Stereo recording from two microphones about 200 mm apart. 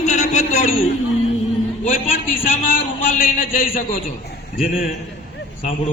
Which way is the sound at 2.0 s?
30° left (ahead or behind).